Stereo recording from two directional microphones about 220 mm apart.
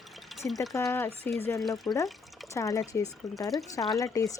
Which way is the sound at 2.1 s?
Centre (ahead or behind).